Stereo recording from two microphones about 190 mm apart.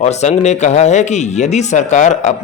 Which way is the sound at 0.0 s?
35° left (ahead or behind).